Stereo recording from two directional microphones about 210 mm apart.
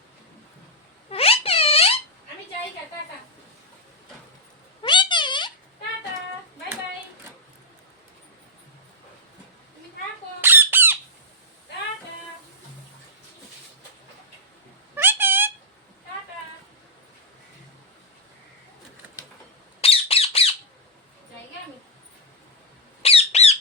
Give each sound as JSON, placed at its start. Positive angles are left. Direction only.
{"t": 1.1, "sound": "wail", "side_deg": 30}
{"t": 4.8, "sound": "cat", "side_deg": 20}
{"t": 10.4, "sound": "squawk", "side_deg": -10}
{"t": 14.9, "sound": "a sound", "side_deg": -10}
{"t": 19.8, "sound": "squawk", "side_deg": 30}
{"t": 23.0, "sound": "squawk", "side_deg": 30}